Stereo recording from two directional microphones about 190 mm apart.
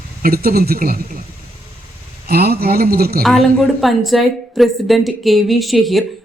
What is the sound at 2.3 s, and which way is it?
Speech, 55° right (ahead or behind).